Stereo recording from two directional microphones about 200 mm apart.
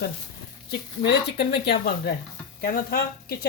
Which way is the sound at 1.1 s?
55° left (ahead or behind).